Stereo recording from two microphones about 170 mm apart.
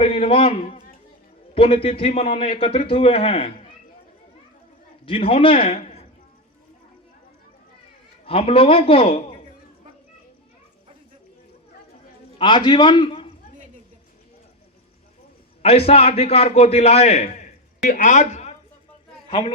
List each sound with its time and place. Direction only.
0.0 s a man's voice: 35° left (ahead or behind)
5.0 s a man's voice: 35° left (ahead or behind)
8.2 s a man's voice: 35° left (ahead or behind)
12.4 s a man's voice: 30° left (ahead or behind)
15.6 s a man's voice: 35° left (ahead or behind)